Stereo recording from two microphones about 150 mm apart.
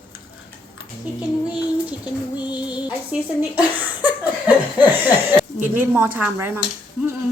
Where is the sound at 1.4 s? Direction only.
10° right (ahead or behind).